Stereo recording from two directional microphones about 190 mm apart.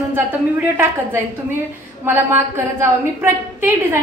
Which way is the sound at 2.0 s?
10° right (ahead or behind).